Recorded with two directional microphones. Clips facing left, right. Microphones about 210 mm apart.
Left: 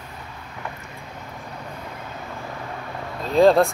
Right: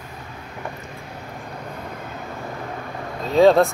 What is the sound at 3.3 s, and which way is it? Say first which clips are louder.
Speech: right 1 dB; centre (ahead or behind).